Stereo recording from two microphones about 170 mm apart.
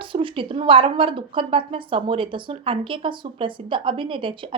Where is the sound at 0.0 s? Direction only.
30° right (ahead or behind).